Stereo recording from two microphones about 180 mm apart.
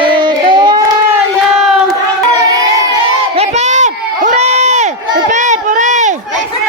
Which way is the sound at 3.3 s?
35° right (ahead or behind).